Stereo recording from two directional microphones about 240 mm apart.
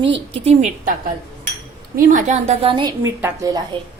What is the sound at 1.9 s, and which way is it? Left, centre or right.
A woman's voice, right.